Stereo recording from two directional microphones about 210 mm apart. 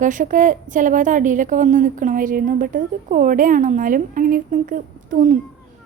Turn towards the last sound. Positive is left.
turn(degrees=-35)  # may be behind; listen again after turning